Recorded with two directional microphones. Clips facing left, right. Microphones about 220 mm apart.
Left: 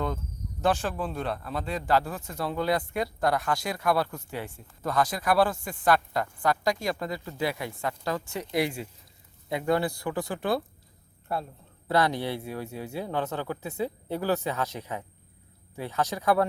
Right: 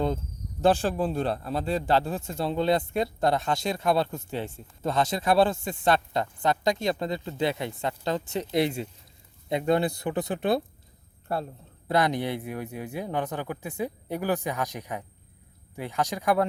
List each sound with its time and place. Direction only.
0.6 s a man's voice: 30° right (ahead or behind)
11.9 s speech: 15° right (ahead or behind)